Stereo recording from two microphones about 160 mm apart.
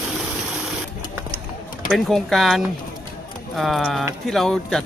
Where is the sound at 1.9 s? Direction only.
Centre (ahead or behind).